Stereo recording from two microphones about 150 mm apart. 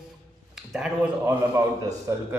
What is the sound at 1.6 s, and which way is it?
Speech, 20° right (ahead or behind).